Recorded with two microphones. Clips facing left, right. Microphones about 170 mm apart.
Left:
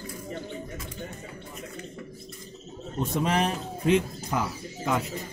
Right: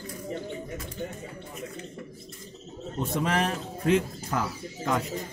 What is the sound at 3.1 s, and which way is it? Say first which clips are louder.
A man's voice: left 1 dB; 20° left (ahead or behind).